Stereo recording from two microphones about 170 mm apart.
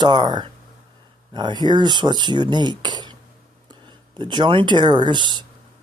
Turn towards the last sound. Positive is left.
turn(degrees=-25)  # may be behind; listen again after turning